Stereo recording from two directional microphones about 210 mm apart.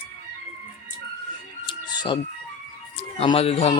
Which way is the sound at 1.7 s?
20° left (ahead or behind).